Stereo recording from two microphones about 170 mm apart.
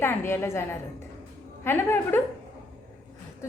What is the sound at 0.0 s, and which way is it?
A woman's voice, 15° left (ahead or behind).